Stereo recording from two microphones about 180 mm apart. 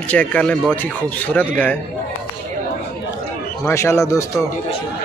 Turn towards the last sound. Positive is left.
turn(degrees=15)  # may be behind; listen again after turning